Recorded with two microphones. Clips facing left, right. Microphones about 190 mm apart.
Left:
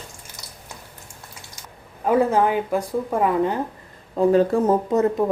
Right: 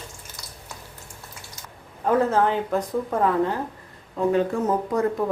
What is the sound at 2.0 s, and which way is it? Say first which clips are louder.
Speech: left 2 dB; 10° left (ahead or behind).